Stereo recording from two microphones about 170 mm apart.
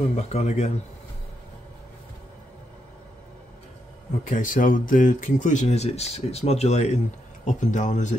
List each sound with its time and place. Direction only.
0.1 s speech: 40° left (ahead or behind)
4.2 s speech: 50° left (ahead or behind)